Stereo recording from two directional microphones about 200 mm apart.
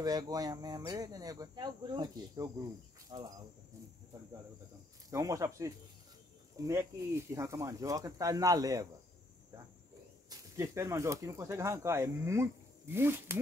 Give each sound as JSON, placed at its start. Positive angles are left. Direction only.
{"t": 0.0, "sound": "speech", "side_deg": -20}
{"t": 5.1, "sound": "speech", "side_deg": -15}
{"t": 10.3, "sound": "speech", "side_deg": -15}